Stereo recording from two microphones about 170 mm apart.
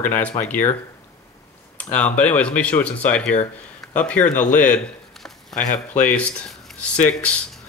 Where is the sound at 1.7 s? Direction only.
10° left (ahead or behind).